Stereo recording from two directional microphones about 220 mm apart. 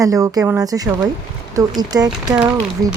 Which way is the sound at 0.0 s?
15° right (ahead or behind).